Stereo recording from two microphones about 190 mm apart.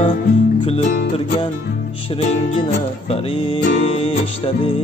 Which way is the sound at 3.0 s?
30° left (ahead or behind).